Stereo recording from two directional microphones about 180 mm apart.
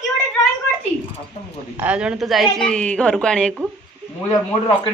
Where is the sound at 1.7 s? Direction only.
5° right (ahead or behind).